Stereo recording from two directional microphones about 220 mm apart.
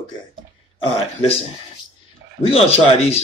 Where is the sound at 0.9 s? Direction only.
25° left (ahead or behind).